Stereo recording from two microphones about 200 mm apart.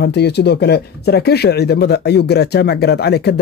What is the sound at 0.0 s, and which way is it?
Speech, 55° left (ahead or behind).